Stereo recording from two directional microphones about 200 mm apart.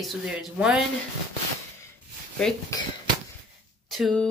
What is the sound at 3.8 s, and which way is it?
Speech, centre (ahead or behind).